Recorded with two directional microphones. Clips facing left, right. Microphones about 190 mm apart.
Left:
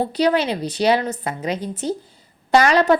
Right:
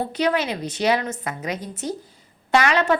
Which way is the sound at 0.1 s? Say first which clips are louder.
Left 4 dB; 35° left (ahead or behind).